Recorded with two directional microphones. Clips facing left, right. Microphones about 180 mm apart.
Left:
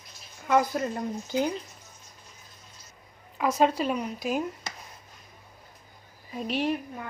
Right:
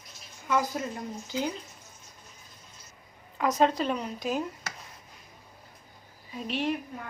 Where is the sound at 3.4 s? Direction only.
10° left (ahead or behind).